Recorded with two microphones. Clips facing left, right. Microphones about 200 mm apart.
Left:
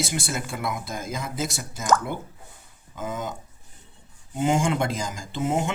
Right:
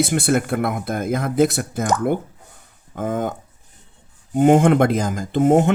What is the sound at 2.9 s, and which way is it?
Speech, 55° right (ahead or behind).